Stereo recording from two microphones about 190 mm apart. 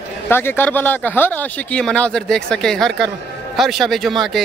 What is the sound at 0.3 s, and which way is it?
A man's voice, 10° left (ahead or behind).